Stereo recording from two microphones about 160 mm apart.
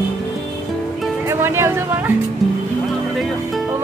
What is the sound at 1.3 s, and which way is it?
Speech, 15° right (ahead or behind).